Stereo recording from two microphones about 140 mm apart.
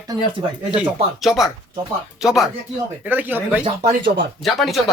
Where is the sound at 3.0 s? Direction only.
10° right (ahead or behind).